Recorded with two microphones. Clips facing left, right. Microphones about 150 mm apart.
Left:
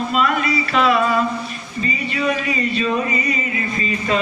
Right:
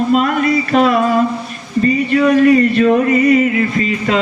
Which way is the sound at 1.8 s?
60° right (ahead or behind).